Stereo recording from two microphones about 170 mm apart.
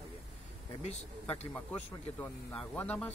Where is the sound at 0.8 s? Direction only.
40° left (ahead or behind).